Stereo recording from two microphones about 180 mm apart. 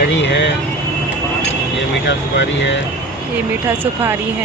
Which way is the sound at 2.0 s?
75° left (ahead or behind).